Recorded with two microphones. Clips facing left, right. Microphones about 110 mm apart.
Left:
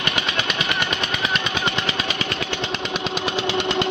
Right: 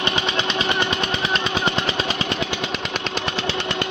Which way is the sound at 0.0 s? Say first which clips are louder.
Right 2 dB; 25° right (ahead or behind).